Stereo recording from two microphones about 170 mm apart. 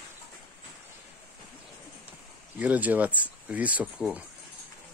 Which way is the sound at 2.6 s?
10° right (ahead or behind).